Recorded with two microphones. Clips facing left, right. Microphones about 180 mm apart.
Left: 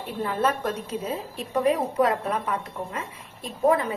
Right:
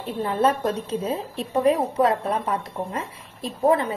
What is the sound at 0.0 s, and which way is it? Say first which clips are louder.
A woman's voice: right 4 dB; 25° right (ahead or behind).